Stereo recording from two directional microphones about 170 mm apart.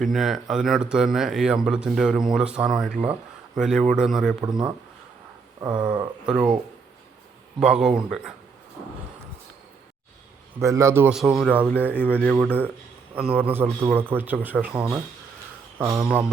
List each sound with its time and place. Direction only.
0.0 s speech: centre (ahead or behind)
5.5 s a sound: 25° right (ahead or behind)
7.6 s speech: 5° right (ahead or behind)
10.6 s a man's voice: 20° right (ahead or behind)
11.1 s a man's voice: 5° right (ahead or behind)